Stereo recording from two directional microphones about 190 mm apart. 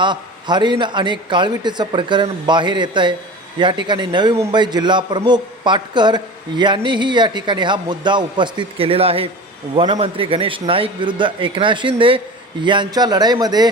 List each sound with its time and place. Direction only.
0.0 s a man's voice: 25° right (ahead or behind)